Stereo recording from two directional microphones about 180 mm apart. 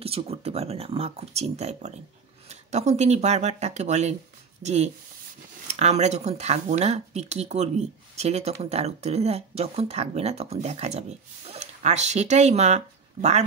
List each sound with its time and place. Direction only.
0.0 s speech: 35° right (ahead or behind)